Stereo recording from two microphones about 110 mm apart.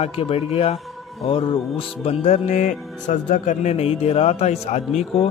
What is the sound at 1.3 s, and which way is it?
Music, 55° left (ahead or behind).